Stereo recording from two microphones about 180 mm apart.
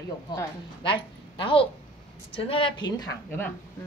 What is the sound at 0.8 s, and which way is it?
A woman's voice, 25° left (ahead or behind).